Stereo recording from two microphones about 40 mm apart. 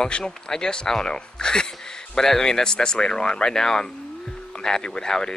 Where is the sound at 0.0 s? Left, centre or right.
Centre.